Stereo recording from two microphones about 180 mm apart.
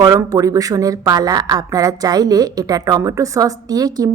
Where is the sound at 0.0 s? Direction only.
20° right (ahead or behind).